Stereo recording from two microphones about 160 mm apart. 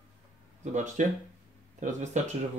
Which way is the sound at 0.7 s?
50° right (ahead or behind).